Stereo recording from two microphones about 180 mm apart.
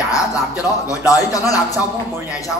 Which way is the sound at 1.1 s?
20° left (ahead or behind).